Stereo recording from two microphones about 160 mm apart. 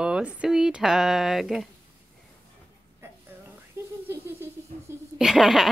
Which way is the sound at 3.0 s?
15° right (ahead or behind).